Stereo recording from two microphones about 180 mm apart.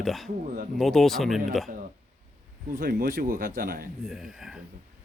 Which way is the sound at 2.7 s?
50° right (ahead or behind).